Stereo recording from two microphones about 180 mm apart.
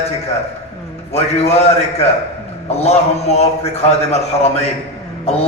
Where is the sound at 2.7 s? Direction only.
35° left (ahead or behind).